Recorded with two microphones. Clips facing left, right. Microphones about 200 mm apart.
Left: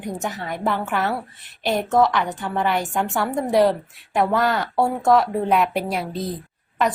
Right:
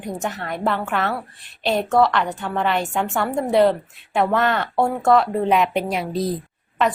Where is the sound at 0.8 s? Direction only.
Centre (ahead or behind).